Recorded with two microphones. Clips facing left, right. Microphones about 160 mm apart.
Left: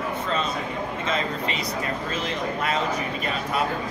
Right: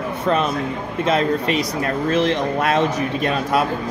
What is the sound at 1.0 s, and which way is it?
A man's voice, 70° right (ahead or behind).